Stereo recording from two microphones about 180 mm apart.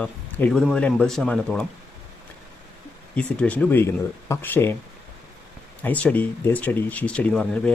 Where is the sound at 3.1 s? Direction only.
5° left (ahead or behind).